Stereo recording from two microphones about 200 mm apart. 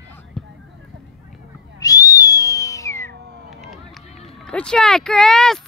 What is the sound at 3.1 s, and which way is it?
Cat, 55° right (ahead or behind).